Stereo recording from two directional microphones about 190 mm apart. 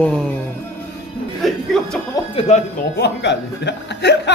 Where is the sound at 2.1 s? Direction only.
20° left (ahead or behind).